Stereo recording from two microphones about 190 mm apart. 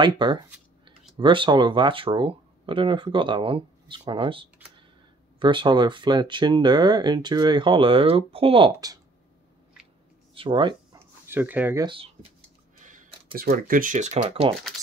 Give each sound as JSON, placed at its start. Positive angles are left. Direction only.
{"t": 0.0, "sound": "speech", "side_deg": -25}
{"t": 10.3, "sound": "speech", "side_deg": -25}
{"t": 11.2, "sound": "speech", "side_deg": -10}
{"t": 11.8, "sound": "speech", "side_deg": -30}
{"t": 12.8, "sound": "speech", "side_deg": -45}